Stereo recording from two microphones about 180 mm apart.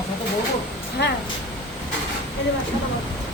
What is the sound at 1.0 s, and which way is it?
Speech, 70° left (ahead or behind).